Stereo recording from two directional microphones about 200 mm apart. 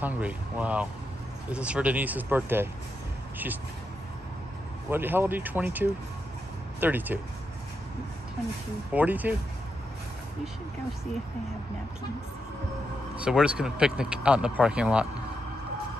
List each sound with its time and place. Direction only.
0.0 s speech: 5° right (ahead or behind)
4.8 s speech: 10° right (ahead or behind)
8.9 s speech: 10° right (ahead or behind)
13.2 s speech: 5° right (ahead or behind)